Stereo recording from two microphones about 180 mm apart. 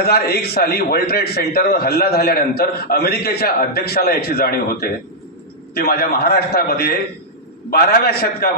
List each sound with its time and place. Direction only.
0.0 s a man's voice: 60° left (ahead or behind)